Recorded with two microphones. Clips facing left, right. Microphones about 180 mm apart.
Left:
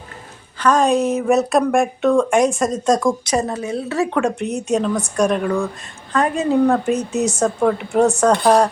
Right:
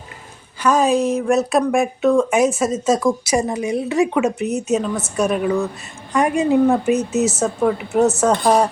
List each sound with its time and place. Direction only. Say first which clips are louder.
0.6 s a woman's voice: even; 5° right (ahead or behind)